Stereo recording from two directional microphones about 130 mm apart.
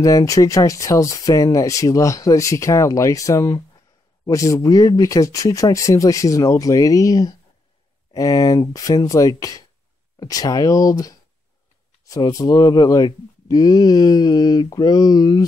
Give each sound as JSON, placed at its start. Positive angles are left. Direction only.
{"t": 0.0, "sound": "speech", "side_deg": 25}